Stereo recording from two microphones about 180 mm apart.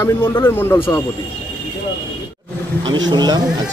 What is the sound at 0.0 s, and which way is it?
Speech, 15° left (ahead or behind).